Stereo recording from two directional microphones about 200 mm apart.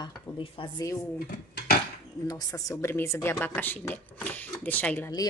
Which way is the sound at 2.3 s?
15° left (ahead or behind).